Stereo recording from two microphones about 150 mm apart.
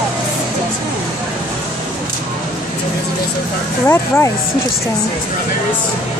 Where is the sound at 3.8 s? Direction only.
15° left (ahead or behind).